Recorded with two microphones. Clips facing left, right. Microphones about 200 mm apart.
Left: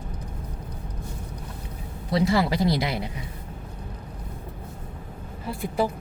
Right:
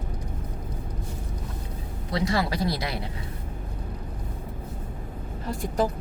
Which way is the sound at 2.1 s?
25° left (ahead or behind).